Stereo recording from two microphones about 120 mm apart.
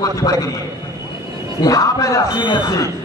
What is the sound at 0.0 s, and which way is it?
Speech, 30° left (ahead or behind).